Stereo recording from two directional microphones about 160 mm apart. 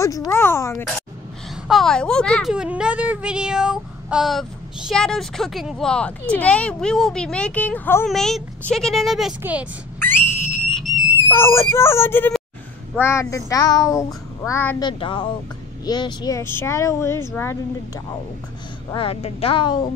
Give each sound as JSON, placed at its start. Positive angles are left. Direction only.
{"t": 0.0, "sound": "speech", "side_deg": 20}
{"t": 1.7, "sound": "speech", "side_deg": 0}
{"t": 9.9, "sound": "whistle", "side_deg": 15}
{"t": 11.2, "sound": "speech", "side_deg": 15}
{"t": 13.0, "sound": "child singing", "side_deg": 20}
{"t": 14.8, "sound": "a woman's voice", "side_deg": 30}
{"t": 18.9, "sound": "a woman's voice", "side_deg": 35}